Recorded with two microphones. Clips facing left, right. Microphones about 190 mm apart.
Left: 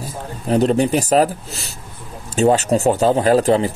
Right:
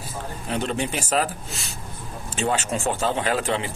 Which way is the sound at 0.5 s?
40° left (ahead or behind).